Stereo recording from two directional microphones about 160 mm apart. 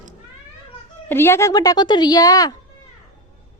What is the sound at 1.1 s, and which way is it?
A woman's voice, 15° left (ahead or behind).